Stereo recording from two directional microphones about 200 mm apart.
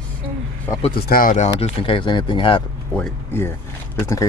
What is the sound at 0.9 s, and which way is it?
Speech, 50° left (ahead or behind).